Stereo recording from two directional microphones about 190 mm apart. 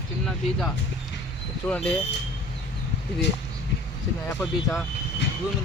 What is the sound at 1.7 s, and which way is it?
Speech, 5° left (ahead or behind).